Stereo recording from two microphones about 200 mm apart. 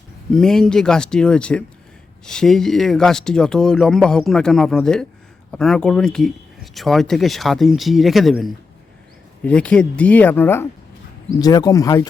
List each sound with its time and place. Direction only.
0.3 s speech: 5° left (ahead or behind)